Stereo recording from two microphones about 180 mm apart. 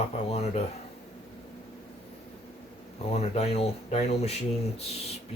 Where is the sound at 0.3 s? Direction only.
35° left (ahead or behind).